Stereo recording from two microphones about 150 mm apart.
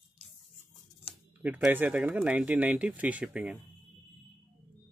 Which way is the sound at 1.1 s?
40° left (ahead or behind).